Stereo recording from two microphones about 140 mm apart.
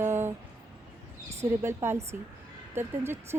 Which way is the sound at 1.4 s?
20° right (ahead or behind).